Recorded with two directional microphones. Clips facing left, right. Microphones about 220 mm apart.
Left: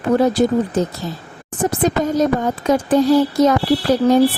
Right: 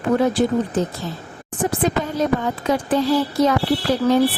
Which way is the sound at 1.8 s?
45° left (ahead or behind).